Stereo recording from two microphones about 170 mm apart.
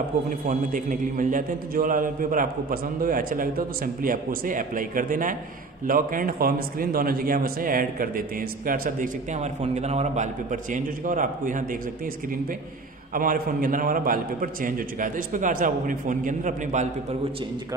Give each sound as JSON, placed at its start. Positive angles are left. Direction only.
{"t": 0.3, "sound": "a man's voice", "side_deg": -50}
{"t": 9.3, "sound": "a man's voice", "side_deg": -45}
{"t": 13.1, "sound": "a man's voice", "side_deg": -55}